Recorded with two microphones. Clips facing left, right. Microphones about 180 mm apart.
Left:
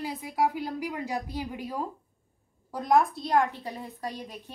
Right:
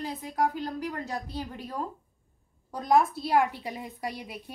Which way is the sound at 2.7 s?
Centre (ahead or behind).